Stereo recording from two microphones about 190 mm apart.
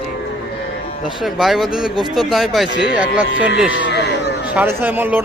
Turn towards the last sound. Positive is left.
turn(degrees=-10)  # may be behind; listen again after turning